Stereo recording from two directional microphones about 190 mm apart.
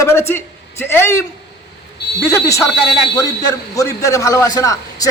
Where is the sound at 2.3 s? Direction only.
15° left (ahead or behind).